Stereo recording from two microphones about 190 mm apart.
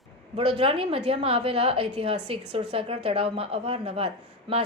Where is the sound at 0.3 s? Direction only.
30° right (ahead or behind).